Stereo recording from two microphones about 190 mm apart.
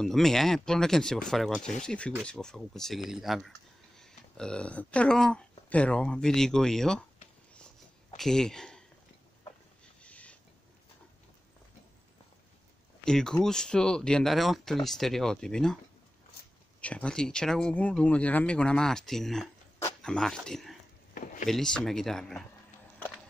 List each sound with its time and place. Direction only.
0.0 s speech: centre (ahead or behind)
8.2 s speech: 5° left (ahead or behind)
10.0 s a sound: 5° left (ahead or behind)
13.0 s speech: 5° left (ahead or behind)
16.8 s speech: 5° left (ahead or behind)
21.1 s wood: 45° left (ahead or behind)
21.5 s speech: centre (ahead or behind)